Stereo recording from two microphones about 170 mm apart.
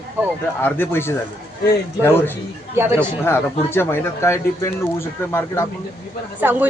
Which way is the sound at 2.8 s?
15° right (ahead or behind).